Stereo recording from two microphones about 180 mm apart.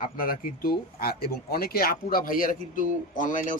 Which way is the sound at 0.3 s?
55° left (ahead or behind).